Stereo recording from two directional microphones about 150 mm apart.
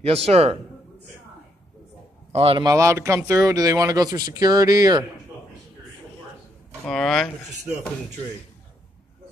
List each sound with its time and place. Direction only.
0.0 s speech: 40° right (ahead or behind)
2.3 s speech: 40° right (ahead or behind)
2.6 s speech: 20° right (ahead or behind)
6.9 s speech: 5° left (ahead or behind)